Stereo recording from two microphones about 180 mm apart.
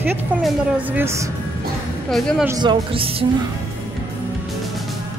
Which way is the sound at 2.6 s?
30° right (ahead or behind).